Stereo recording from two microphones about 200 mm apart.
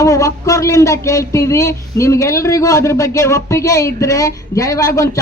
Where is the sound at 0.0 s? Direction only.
15° left (ahead or behind).